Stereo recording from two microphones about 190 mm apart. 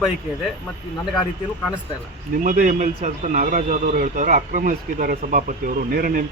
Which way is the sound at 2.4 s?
45° right (ahead or behind).